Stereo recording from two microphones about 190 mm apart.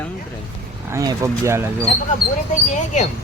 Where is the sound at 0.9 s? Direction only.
20° right (ahead or behind).